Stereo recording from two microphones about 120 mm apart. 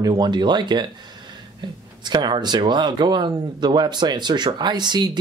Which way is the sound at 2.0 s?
35° right (ahead or behind).